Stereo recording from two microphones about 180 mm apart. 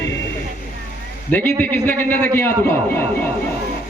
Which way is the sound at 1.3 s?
10° left (ahead or behind).